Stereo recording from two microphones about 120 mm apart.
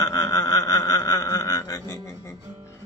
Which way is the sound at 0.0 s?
30° left (ahead or behind).